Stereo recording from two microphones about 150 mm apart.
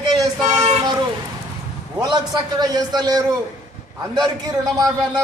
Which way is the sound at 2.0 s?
25° right (ahead or behind).